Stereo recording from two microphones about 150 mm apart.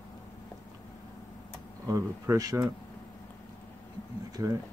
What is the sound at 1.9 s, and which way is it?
Speech, 20° right (ahead or behind).